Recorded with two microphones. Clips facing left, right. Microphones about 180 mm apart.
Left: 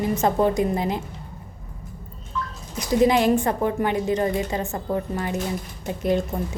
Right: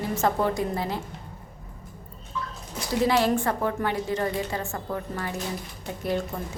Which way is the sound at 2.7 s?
15° left (ahead or behind).